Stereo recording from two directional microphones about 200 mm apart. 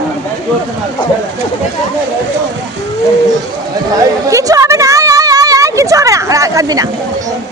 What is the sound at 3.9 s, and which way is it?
A woman's voice, 15° right (ahead or behind).